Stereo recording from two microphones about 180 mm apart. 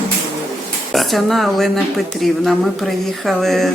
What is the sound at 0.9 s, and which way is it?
Speech, centre (ahead or behind).